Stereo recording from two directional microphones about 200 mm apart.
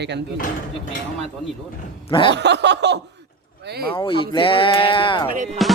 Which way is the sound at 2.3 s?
60° right (ahead or behind).